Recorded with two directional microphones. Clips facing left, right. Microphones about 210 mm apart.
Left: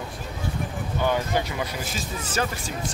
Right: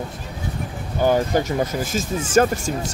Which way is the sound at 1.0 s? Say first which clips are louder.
Right 7 dB; 40° right (ahead or behind).